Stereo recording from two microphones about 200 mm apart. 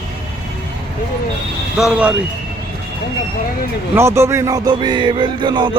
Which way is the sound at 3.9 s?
15° right (ahead or behind).